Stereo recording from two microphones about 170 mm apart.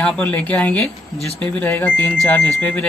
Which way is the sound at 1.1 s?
35° left (ahead or behind).